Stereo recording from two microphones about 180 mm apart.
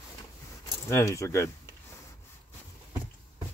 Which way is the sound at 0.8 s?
15° left (ahead or behind).